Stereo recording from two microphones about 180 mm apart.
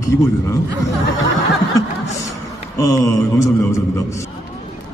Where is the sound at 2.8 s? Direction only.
15° left (ahead or behind).